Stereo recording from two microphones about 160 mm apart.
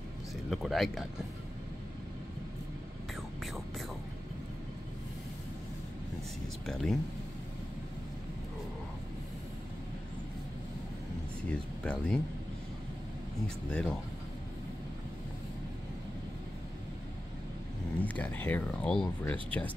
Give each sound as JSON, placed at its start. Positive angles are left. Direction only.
{"t": 0.5, "sound": "speech", "side_deg": 0}
{"t": 6.6, "sound": "speech", "side_deg": 5}
{"t": 11.4, "sound": "a sound", "side_deg": 5}
{"t": 13.7, "sound": "speech", "side_deg": 5}
{"t": 18.0, "sound": "speech", "side_deg": 10}